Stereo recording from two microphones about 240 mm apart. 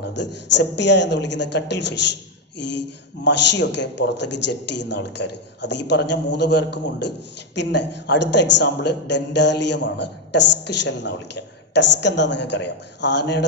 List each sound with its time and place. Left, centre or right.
0.5 s a man's voice: left